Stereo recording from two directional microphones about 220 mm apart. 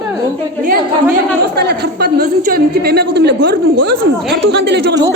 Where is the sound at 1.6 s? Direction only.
50° right (ahead or behind).